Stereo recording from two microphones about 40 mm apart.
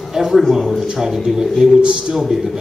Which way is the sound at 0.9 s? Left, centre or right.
Centre.